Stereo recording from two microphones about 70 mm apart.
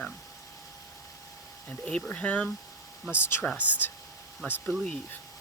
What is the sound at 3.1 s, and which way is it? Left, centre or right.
Speech, left.